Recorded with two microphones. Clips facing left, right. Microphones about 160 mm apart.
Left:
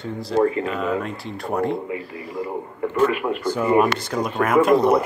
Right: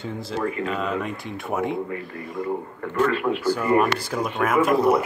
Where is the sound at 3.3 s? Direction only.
5° right (ahead or behind).